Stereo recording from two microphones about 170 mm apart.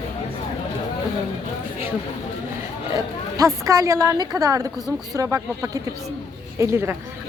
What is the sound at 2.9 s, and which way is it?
A woman's voice, 20° right (ahead or behind).